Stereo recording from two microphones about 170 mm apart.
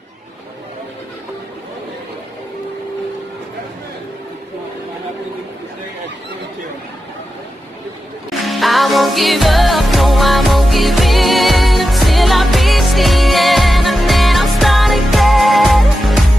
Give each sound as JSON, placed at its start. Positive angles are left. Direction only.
{"t": 8.3, "sound": "music", "side_deg": 0}